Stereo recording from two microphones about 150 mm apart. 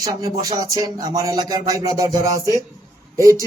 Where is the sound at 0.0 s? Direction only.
25° right (ahead or behind).